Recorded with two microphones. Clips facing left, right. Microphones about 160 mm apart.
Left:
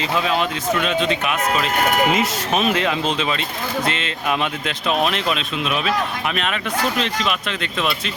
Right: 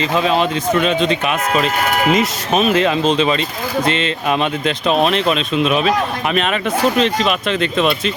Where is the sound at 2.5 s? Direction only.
20° right (ahead or behind).